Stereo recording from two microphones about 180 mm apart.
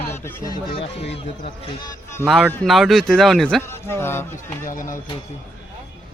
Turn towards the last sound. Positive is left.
turn(degrees=50)  # may be behind; listen again after turning